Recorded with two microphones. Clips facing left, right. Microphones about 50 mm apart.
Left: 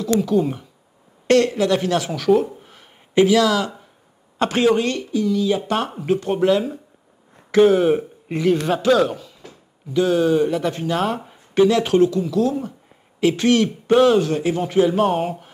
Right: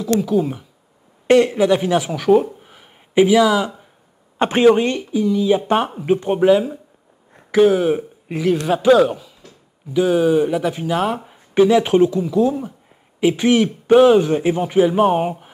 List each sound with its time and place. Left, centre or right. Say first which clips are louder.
0.2 s speech: even; centre
1.2 s speech: right 3 dB; centre
2.6 s a sound: right 1 dB; centre
4.4 s speech: right 4 dB; right; by 11.3 s centre
11.5 s speech: right 2 dB; centre